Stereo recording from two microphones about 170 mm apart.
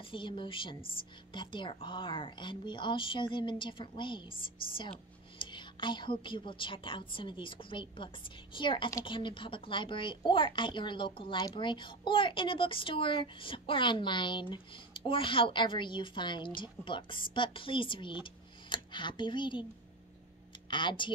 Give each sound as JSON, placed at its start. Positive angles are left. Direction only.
{"t": 0.1, "sound": "a woman's voice", "side_deg": 30}
{"t": 20.7, "sound": "a woman's voice", "side_deg": 30}